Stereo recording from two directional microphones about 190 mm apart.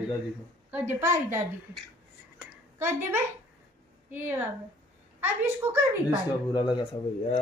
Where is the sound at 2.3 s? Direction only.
10° right (ahead or behind).